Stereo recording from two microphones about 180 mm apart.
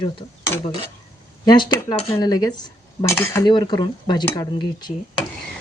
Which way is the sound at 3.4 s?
25° left (ahead or behind).